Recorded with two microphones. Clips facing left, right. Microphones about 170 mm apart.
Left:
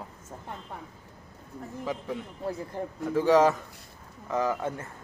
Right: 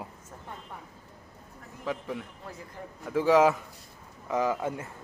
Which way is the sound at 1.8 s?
Centre (ahead or behind).